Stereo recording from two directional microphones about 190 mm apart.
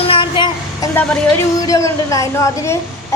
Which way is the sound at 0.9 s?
10° left (ahead or behind).